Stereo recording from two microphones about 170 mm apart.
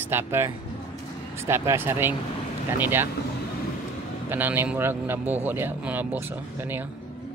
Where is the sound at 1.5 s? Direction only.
15° right (ahead or behind).